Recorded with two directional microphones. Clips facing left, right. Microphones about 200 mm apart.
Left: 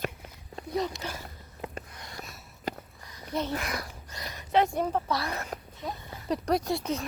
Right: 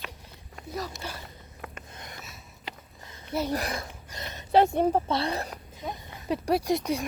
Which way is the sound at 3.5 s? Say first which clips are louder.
Right 3 dB; 35° right (ahead or behind).